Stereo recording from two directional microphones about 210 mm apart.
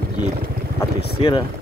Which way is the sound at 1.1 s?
25° left (ahead or behind).